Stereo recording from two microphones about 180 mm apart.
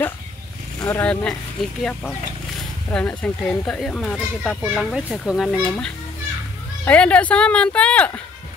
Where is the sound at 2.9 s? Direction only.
5° left (ahead or behind).